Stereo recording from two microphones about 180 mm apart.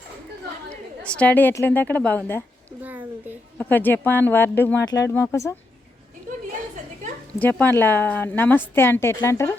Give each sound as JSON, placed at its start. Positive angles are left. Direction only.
{"t": 0.7, "sound": "a woman's voice", "side_deg": 5}
{"t": 2.8, "sound": "a sound", "side_deg": -10}
{"t": 3.6, "sound": "a woman's voice", "side_deg": 10}
{"t": 7.3, "sound": "a woman's voice", "side_deg": 10}